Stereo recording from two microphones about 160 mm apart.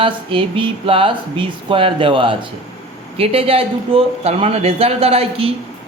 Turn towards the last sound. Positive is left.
turn(degrees=-35)  # may be behind; listen again after turning